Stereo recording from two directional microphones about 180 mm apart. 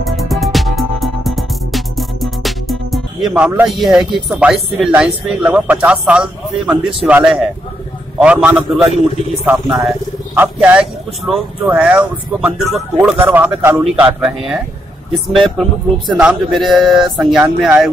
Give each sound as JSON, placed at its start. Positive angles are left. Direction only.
{"t": 0.0, "sound": "music", "side_deg": 0}
{"t": 7.1, "sound": "speech", "side_deg": -5}